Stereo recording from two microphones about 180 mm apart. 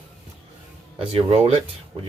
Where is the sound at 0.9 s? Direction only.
30° right (ahead or behind).